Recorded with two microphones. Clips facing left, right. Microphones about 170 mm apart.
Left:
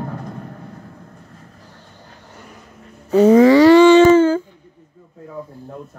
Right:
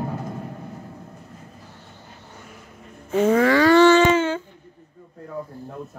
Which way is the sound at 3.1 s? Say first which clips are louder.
Left 7 dB; 35° left (ahead or behind).